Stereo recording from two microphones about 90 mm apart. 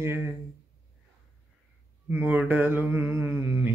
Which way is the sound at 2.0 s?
20° right (ahead or behind).